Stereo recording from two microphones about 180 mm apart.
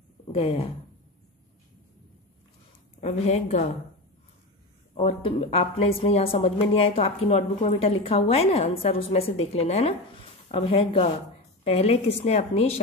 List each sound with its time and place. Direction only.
0.3 s speech: 30° left (ahead or behind)
3.0 s a woman's voice: 40° left (ahead or behind)
4.9 s a woman's voice: 35° left (ahead or behind)